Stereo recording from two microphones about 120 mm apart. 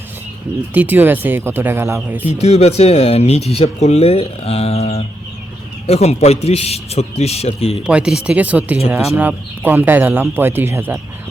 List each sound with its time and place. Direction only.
0.7 s speech: 15° right (ahead or behind)
2.2 s speech: 60° left (ahead or behind)
7.9 s speech: 10° right (ahead or behind)